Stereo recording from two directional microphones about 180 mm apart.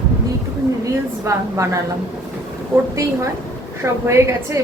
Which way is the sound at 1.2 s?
15° right (ahead or behind).